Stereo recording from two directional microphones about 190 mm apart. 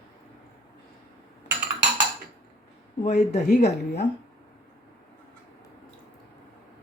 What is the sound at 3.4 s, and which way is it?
Speech, 60° left (ahead or behind).